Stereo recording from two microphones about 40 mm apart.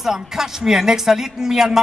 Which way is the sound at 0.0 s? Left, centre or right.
Centre.